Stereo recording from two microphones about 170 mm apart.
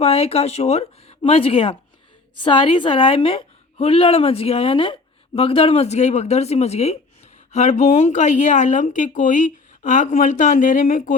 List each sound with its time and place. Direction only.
0.0 s a woman's voice: 35° left (ahead or behind)